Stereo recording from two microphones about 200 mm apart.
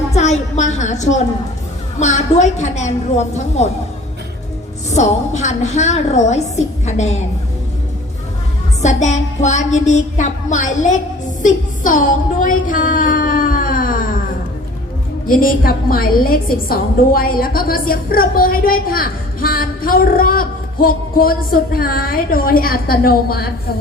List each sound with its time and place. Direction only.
0.1 s a woman's voice: 35° left (ahead or behind)
2.0 s music: 35° left (ahead or behind)
4.9 s music: 35° left (ahead or behind)
8.8 s music: 35° left (ahead or behind)
11.4 s a sound: 40° left (ahead or behind)
15.4 s a woman's voice: 45° left (ahead or behind)